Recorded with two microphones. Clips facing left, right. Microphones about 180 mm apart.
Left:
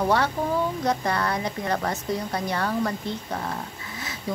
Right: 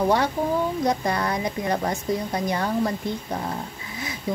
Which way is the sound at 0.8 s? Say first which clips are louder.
Right 1 dB; 15° right (ahead or behind).